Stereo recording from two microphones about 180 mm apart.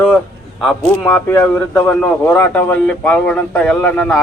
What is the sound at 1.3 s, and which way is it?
A man's voice, 10° left (ahead or behind).